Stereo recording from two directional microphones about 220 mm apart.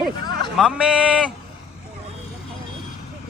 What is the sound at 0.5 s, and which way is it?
Speech, 5° right (ahead or behind).